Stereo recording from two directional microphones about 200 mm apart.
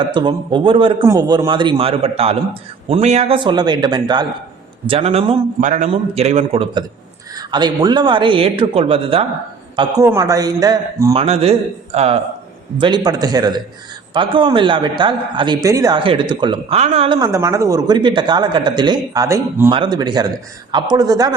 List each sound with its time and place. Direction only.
0.1 s a man's voice: 25° right (ahead or behind)
11.1 s a man's voice: 30° right (ahead or behind)
17.2 s a man's voice: 15° right (ahead or behind)